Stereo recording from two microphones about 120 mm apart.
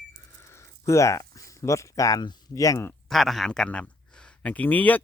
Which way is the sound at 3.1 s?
Centre (ahead or behind).